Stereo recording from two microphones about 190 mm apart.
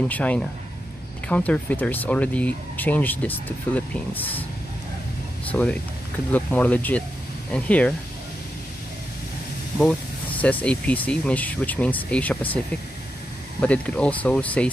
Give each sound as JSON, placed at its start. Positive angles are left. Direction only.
{"t": 0.1, "sound": "speech", "side_deg": 5}
{"t": 5.5, "sound": "speech", "side_deg": 5}
{"t": 9.8, "sound": "speech", "side_deg": 5}
{"t": 13.6, "sound": "speech", "side_deg": 5}